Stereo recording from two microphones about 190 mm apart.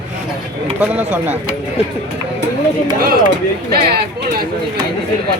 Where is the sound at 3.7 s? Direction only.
55° right (ahead or behind).